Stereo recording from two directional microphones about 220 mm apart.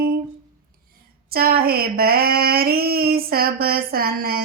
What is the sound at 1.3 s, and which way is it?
Female singing, 45° right (ahead or behind).